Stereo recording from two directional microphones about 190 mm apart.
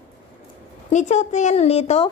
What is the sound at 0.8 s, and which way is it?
Female singing, 40° left (ahead or behind).